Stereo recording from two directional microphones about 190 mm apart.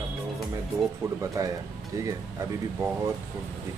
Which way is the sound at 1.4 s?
15° right (ahead or behind).